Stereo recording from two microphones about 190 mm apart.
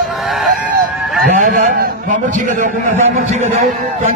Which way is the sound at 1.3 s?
40° right (ahead or behind).